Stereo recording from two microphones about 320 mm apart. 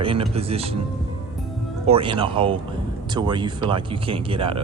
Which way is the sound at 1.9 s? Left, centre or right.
Centre.